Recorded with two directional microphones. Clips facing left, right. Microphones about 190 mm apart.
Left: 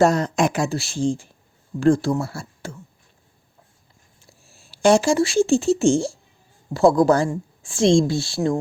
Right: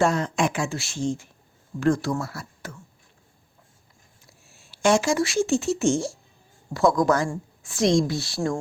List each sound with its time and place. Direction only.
0.0 s a woman's voice: 40° left (ahead or behind)
4.2 s a woman's voice: 30° left (ahead or behind)